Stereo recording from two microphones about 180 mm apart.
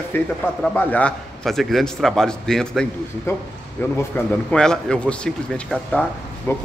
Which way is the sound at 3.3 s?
15° left (ahead or behind).